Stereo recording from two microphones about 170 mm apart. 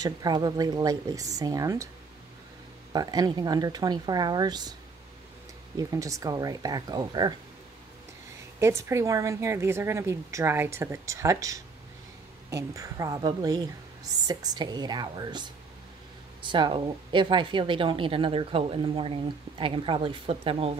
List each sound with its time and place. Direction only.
0.0 s a woman's voice: 25° right (ahead or behind)
2.9 s a woman's voice: 25° right (ahead or behind)
5.8 s a woman's voice: 20° right (ahead or behind)
8.5 s a woman's voice: 15° right (ahead or behind); by 20.7 s 35° right (ahead or behind)